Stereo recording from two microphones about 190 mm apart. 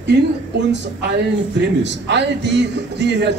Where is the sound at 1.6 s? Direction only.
65° right (ahead or behind).